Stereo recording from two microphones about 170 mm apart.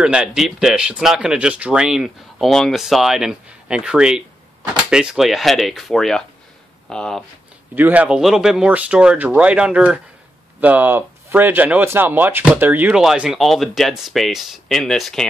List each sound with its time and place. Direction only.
0.0 s speech: 5° right (ahead or behind)
7.7 s speech: 10° right (ahead or behind)